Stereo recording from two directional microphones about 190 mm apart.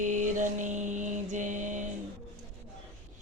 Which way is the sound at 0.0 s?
40° right (ahead or behind).